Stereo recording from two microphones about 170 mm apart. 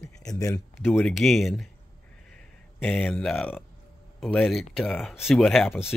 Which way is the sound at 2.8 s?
5° left (ahead or behind).